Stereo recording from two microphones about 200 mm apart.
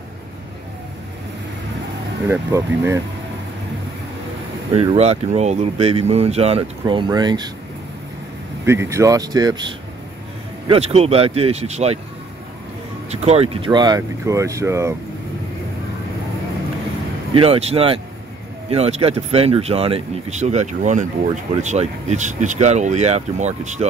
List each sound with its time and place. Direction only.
2.2 s speech: 15° right (ahead or behind)
4.7 s speech: 30° right (ahead or behind)
8.6 s speech: 15° right (ahead or behind)
10.7 s speech: 30° right (ahead or behind)
13.1 s speech: 30° right (ahead or behind); by 15.0 s 15° right (ahead or behind)
17.3 s speech: 30° right (ahead or behind)